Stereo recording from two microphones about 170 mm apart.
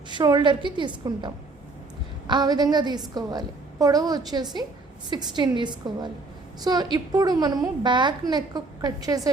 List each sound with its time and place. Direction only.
0.1 s a woman's voice: 25° right (ahead or behind)